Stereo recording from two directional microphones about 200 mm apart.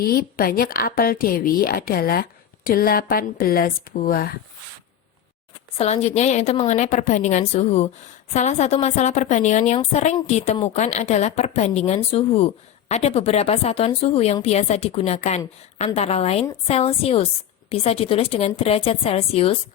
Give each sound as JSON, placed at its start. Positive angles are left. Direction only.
{"t": 0.0, "sound": "a woman's voice", "side_deg": 50}
{"t": 5.7, "sound": "a woman's voice", "side_deg": 30}